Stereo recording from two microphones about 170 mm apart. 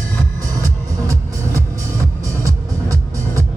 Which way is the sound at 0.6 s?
15° right (ahead or behind).